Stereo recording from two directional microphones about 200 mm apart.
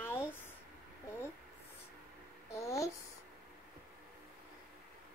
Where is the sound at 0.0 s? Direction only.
10° left (ahead or behind).